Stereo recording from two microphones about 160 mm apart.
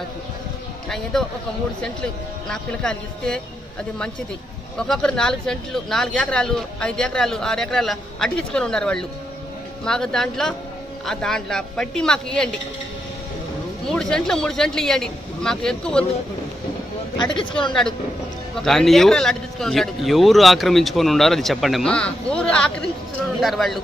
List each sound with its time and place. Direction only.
0.8 s speech: 5° left (ahead or behind)
2.4 s speech: 5° left (ahead or behind)
4.7 s speech: 5° left (ahead or behind)
13.8 s speech: 5° left (ahead or behind)
17.2 s speech: 30° left (ahead or behind)
18.6 s speech: centre (ahead or behind)